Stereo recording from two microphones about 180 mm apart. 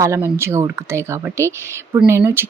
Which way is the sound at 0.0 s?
15° right (ahead or behind).